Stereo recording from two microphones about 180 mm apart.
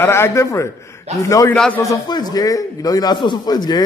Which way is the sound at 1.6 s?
5° left (ahead or behind).